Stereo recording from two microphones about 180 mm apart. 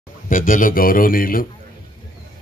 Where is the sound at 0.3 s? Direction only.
50° left (ahead or behind).